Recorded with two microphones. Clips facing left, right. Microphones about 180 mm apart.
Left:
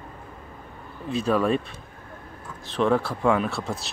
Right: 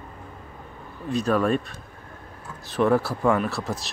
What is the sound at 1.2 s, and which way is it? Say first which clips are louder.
Speech: even; centre (ahead or behind).